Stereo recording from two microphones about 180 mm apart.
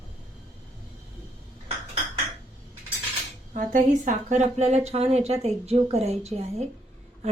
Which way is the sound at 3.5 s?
45° right (ahead or behind).